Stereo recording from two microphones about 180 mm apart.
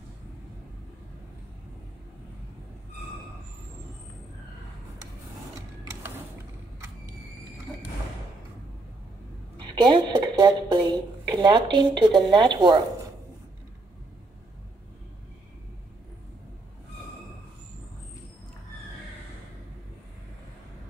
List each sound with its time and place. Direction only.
9.6 s a woman's voice: 25° right (ahead or behind)